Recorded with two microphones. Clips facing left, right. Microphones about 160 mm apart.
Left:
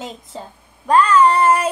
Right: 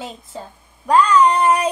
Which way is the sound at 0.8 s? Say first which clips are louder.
Left 1 dB; 15° right (ahead or behind).